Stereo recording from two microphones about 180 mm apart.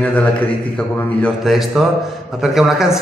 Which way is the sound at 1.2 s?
Centre (ahead or behind).